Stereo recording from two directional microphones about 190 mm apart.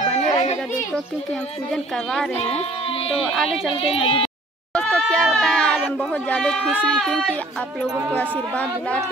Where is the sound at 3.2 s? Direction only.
Centre (ahead or behind).